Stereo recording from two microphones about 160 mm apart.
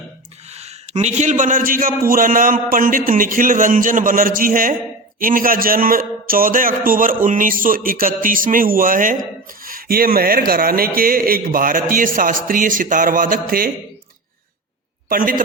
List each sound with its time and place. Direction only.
0.5 s a sound: 40° right (ahead or behind)
1.2 s speech: 50° right (ahead or behind)
15.1 s speech: 60° right (ahead or behind)